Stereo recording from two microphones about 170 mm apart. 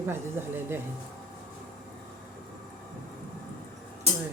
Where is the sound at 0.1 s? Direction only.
15° right (ahead or behind).